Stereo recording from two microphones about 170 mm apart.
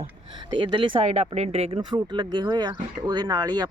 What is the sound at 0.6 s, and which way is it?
Speech, 30° right (ahead or behind).